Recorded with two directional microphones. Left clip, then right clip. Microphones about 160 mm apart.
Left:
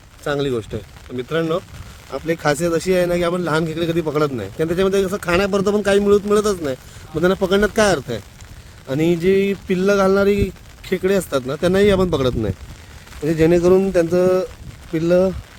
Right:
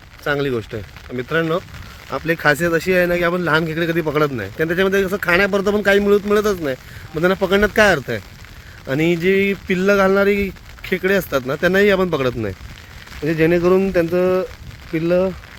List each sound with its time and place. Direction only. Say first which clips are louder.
0.3 s a man's voice: right 1 dB; 10° left (ahead or behind); by 15.3 s 30° left (ahead or behind)